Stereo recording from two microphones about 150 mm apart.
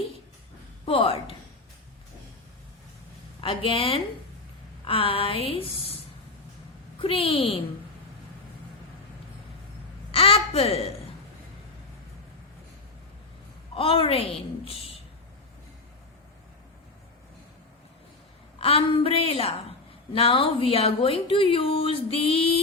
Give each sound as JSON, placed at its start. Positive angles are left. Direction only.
{"t": 0.9, "sound": "speech", "side_deg": 40}
{"t": 3.4, "sound": "speech", "side_deg": 35}
{"t": 7.0, "sound": "speech", "side_deg": 40}
{"t": 10.1, "sound": "a sound", "side_deg": 40}
{"t": 13.7, "sound": "speech", "side_deg": 35}
{"t": 18.6, "sound": "speech", "side_deg": 40}